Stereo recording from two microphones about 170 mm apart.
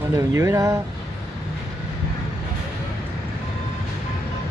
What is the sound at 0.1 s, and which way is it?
Speech, 20° right (ahead or behind).